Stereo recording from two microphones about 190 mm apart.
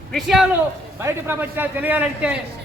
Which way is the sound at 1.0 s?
10° right (ahead or behind).